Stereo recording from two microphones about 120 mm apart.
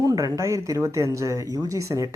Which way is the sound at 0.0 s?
30° right (ahead or behind).